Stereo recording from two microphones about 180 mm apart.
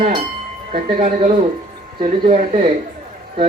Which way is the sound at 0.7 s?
35° right (ahead or behind).